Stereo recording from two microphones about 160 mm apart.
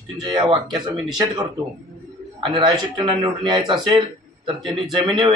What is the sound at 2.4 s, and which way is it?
Speech, 30° right (ahead or behind).